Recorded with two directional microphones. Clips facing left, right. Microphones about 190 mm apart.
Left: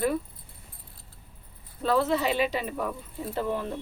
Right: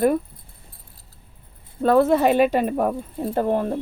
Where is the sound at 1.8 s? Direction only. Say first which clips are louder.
Right 8 dB; 50° right (ahead or behind).